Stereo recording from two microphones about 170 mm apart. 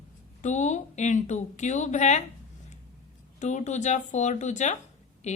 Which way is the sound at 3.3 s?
45° left (ahead or behind).